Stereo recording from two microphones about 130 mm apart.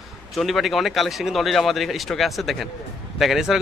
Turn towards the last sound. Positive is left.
turn(degrees=-5)  # may be behind; listen again after turning